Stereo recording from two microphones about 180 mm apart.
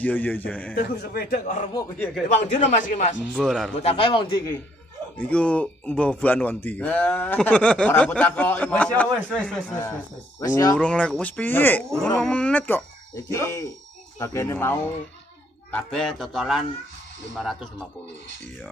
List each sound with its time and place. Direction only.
0.0 s speech: 10° left (ahead or behind)
0.7 s speech: 55° left (ahead or behind)
3.2 s a man's voice: centre (ahead or behind)
3.8 s a man's voice: 30° left (ahead or behind)
5.1 s speech: 5° left (ahead or behind)
9.7 s a man's voice: 15° left (ahead or behind)
10.8 s a man's voice: 5° left (ahead or behind)